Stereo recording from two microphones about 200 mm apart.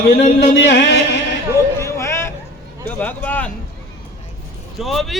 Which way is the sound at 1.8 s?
15° left (ahead or behind).